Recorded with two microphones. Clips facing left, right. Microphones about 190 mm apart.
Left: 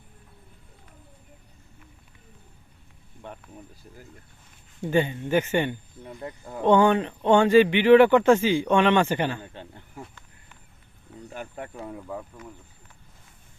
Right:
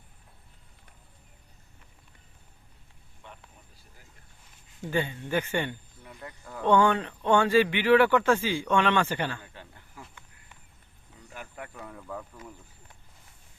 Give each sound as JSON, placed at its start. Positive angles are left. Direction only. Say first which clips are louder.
{"t": 3.2, "sound": "vehicle", "louder": "left 9 dB", "side_deg": 50}
{"t": 4.9, "sound": "speech", "louder": "left 6 dB", "side_deg": 20}
{"t": 6.0, "sound": "speech", "louder": "left 8 dB", "side_deg": 30}
{"t": 6.6, "sound": "speech", "louder": "left 4 dB", "side_deg": 15}
{"t": 11.3, "sound": "speech", "louder": "left 5 dB", "side_deg": 30}